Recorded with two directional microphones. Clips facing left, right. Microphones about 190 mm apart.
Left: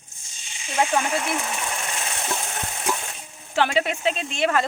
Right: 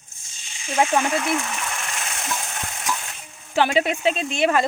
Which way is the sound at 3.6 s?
15° right (ahead or behind).